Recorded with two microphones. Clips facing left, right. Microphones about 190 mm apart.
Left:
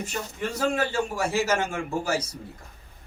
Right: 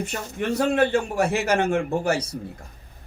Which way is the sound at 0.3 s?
60° right (ahead or behind).